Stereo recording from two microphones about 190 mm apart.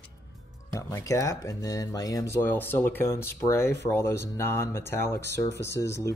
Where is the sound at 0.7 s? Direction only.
15° left (ahead or behind).